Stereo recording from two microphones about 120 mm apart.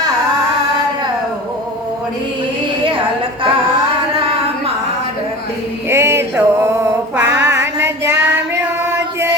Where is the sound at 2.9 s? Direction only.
45° right (ahead or behind).